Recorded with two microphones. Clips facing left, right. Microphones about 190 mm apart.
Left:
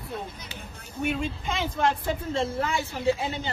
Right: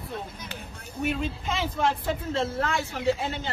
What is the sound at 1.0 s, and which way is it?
A woman's voice, centre (ahead or behind).